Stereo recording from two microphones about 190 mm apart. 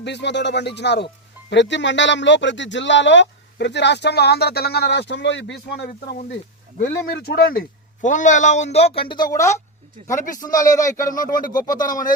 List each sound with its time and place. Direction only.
0.0 s speech: 65° left (ahead or behind)
5.9 s a man's voice: 45° left (ahead or behind); by 11.8 s 20° left (ahead or behind)